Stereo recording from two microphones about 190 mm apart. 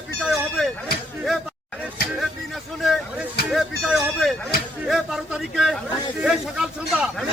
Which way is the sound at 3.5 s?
Centre (ahead or behind).